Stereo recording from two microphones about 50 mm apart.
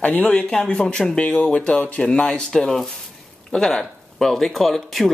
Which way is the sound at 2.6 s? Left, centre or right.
Centre.